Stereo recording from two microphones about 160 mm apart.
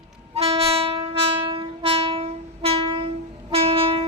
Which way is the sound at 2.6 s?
35° right (ahead or behind).